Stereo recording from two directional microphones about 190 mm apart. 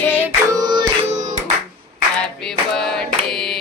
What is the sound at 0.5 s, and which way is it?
Music, 20° right (ahead or behind).